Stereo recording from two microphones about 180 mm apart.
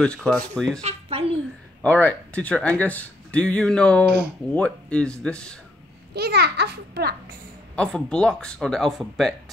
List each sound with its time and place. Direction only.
0.0 s speech: 5° left (ahead or behind)
0.8 s a child's voice: 35° right (ahead or behind)
1.8 s speech: 10° left (ahead or behind)
6.1 s a child's voice: 65° right (ahead or behind)
7.7 s speech: 5° left (ahead or behind)